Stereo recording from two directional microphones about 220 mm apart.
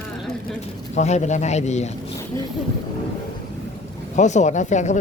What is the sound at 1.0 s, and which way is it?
Speech, 30° left (ahead or behind).